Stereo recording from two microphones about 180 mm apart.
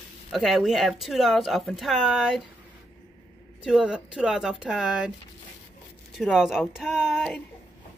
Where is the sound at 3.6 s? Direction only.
5° right (ahead or behind).